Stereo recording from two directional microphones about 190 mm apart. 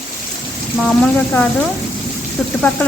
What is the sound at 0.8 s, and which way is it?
Speech, 5° left (ahead or behind).